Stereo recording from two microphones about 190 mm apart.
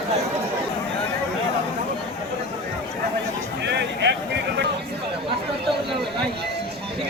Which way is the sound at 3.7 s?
65° right (ahead or behind).